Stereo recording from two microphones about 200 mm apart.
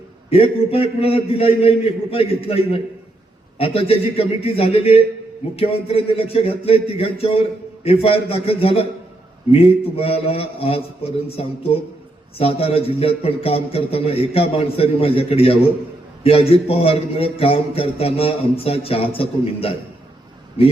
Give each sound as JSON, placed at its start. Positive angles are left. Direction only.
{"t": 0.3, "sound": "a man's voice", "side_deg": 30}